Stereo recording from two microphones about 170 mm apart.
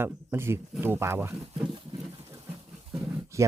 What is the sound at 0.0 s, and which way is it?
Speech, 15° right (ahead or behind).